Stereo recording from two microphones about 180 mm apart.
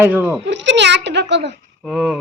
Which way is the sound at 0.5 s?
80° right.